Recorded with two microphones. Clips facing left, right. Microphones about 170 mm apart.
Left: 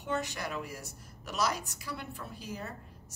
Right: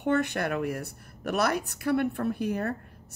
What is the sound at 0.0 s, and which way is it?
A woman's voice, 60° right (ahead or behind).